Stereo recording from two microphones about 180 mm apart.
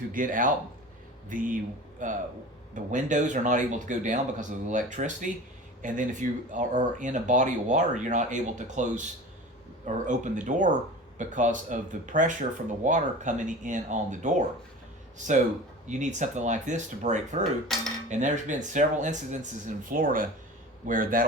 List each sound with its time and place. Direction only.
0.1 s speech: 50° right (ahead or behind)
15.9 s speech: 40° right (ahead or behind)
17.7 s speech: centre (ahead or behind)
18.1 s speech: 45° right (ahead or behind)